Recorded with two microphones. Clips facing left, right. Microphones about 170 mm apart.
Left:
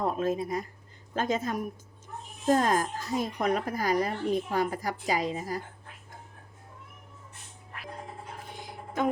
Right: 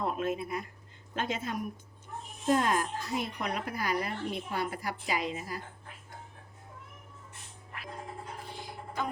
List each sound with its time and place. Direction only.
0.0 s a woman's voice: 35° left (ahead or behind)
8.5 s music: 20° left (ahead or behind)